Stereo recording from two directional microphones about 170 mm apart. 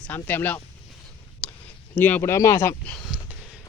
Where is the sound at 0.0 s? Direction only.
10° left (ahead or behind).